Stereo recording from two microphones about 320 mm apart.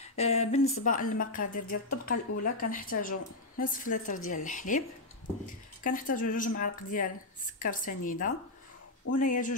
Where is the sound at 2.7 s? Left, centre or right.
Left.